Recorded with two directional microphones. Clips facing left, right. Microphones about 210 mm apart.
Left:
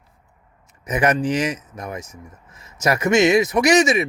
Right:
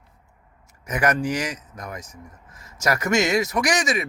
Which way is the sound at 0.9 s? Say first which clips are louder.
Left 3 dB; 20° left (ahead or behind).